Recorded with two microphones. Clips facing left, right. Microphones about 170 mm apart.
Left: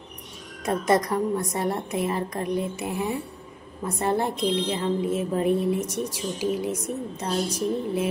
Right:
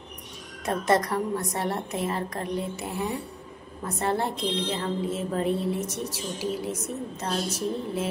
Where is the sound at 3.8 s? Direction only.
15° left (ahead or behind).